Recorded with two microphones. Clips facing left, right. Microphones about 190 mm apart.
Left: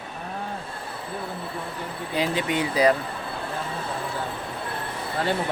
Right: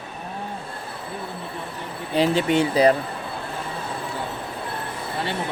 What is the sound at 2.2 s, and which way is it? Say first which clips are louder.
Speech: right 6 dB; 30° right (ahead or behind).